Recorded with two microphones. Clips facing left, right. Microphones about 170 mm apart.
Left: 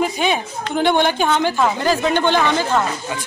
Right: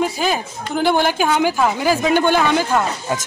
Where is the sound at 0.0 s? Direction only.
Centre (ahead or behind).